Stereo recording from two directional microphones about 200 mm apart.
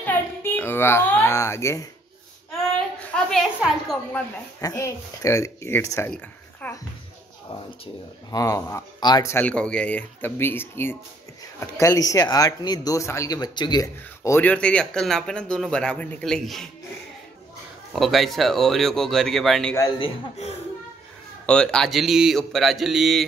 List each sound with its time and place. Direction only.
0.0 s a child's voice: 10° left (ahead or behind)
3.3 s speech: centre (ahead or behind)
4.6 s speech: 15° left (ahead or behind)
7.8 s speech: 20° left (ahead or behind); by 16.7 s centre (ahead or behind)
17.9 s speech: centre (ahead or behind)
20.0 s speech: 35° left (ahead or behind)
21.5 s speech: 5° left (ahead or behind)